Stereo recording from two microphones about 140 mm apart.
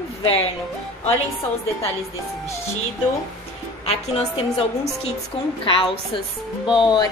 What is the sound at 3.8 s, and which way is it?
A woman's voice, 45° left (ahead or behind).